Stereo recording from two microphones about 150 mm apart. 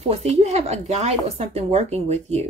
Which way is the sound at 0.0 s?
45° right (ahead or behind).